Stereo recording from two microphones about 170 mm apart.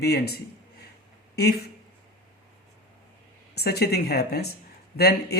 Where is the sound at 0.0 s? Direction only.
70° left (ahead or behind).